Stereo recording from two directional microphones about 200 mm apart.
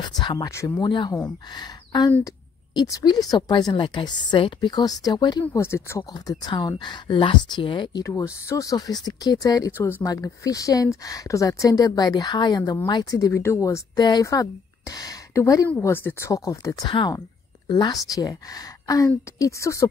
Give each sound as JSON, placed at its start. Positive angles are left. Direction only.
{"t": 0.2, "sound": "speech", "side_deg": 20}